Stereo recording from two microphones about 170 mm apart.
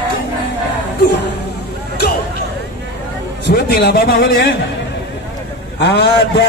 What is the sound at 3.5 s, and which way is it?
A man's voice, 70° left (ahead or behind).